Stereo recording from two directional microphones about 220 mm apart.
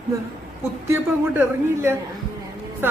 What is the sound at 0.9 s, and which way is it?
A woman's voice, 10° right (ahead or behind).